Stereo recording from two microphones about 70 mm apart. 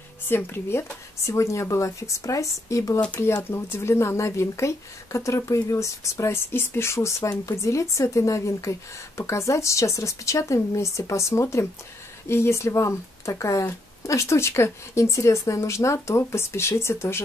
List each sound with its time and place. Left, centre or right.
0.3 s speech: left